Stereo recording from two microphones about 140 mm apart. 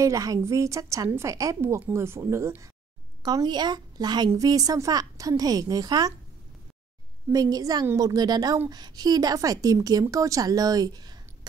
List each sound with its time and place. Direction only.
0.0 s a woman's voice: 25° right (ahead or behind)
7.3 s a woman's voice: 25° right (ahead or behind)